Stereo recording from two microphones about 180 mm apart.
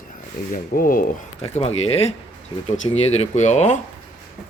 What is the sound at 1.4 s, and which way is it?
Speech, 35° left (ahead or behind).